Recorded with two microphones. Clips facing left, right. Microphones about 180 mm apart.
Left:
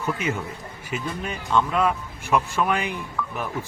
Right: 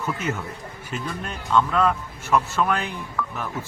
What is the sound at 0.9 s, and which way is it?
Speech, 10° left (ahead or behind).